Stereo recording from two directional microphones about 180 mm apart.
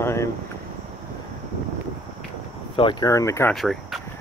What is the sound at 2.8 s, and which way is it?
Speech, 25° left (ahead or behind).